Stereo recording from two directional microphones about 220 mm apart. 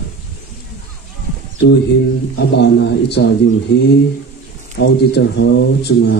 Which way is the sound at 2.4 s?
50° left (ahead or behind).